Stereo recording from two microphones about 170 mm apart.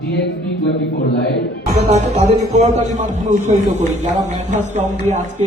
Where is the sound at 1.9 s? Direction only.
40° right (ahead or behind).